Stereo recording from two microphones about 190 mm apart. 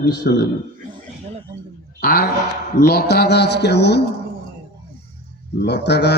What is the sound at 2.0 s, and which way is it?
Speech, 50° left (ahead or behind).